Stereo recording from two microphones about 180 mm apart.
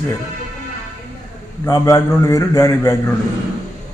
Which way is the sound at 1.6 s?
20° left (ahead or behind).